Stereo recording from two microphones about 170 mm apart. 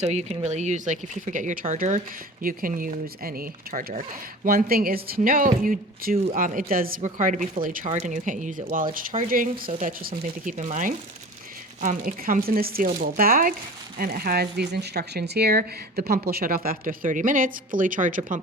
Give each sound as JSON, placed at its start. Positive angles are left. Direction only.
{"t": 0.0, "sound": "speech", "side_deg": -40}
{"t": 7.9, "sound": "speech", "side_deg": -45}